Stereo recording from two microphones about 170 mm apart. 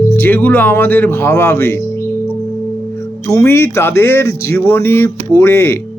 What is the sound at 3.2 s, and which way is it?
Speech, 15° left (ahead or behind).